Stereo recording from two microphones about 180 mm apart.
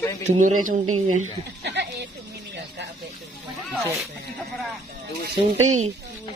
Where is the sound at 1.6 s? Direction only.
70° right (ahead or behind).